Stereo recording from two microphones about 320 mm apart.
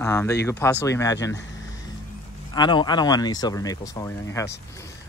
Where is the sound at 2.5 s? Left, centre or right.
Centre.